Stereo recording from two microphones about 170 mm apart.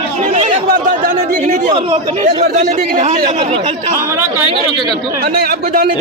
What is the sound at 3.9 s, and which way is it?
Speech, 15° right (ahead or behind).